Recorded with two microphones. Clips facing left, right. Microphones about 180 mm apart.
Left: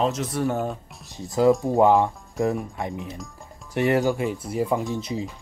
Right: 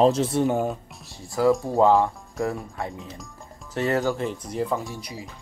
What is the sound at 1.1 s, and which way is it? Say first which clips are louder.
Speech: left 2 dB; 20° left (ahead or behind).